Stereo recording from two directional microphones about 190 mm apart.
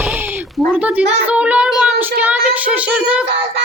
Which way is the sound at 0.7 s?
5° right (ahead or behind).